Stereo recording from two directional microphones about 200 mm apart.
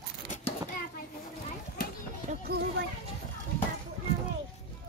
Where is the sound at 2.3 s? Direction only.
40° right (ahead or behind).